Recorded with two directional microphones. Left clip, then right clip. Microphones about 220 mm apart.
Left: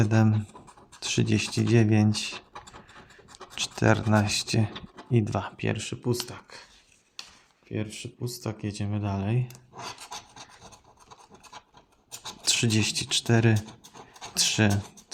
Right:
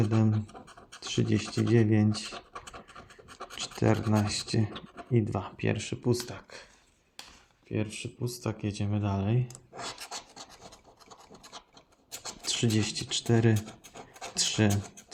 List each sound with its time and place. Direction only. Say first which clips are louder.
0.0 s speech: left 4 dB; 15° left (ahead or behind)
3.5 s speech: left 4 dB; 15° left (ahead or behind); by 6.7 s centre (ahead or behind)
7.7 s speech: even; centre (ahead or behind)
12.5 s speech: left 5 dB; 15° left (ahead or behind)